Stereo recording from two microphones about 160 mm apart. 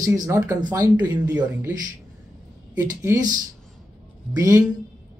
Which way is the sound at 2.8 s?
20° right (ahead or behind).